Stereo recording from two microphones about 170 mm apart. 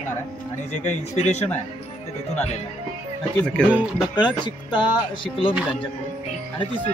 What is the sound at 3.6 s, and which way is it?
Speech, 5° left (ahead or behind).